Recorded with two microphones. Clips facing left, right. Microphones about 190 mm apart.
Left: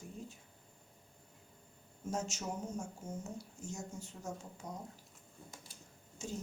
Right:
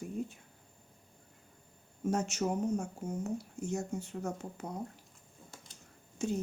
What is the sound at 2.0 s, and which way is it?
Speech, 60° right (ahead or behind).